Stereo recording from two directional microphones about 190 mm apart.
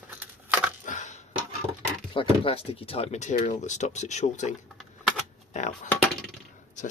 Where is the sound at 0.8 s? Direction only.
40° left (ahead or behind).